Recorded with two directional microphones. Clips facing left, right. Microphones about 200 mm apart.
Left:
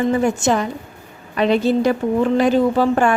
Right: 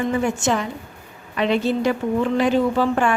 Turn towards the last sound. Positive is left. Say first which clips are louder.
# left 3 dB
turn(degrees=40)  # may be behind; listen again after turning